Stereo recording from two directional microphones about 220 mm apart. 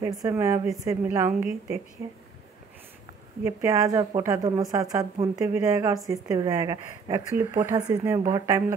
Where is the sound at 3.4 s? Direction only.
15° right (ahead or behind).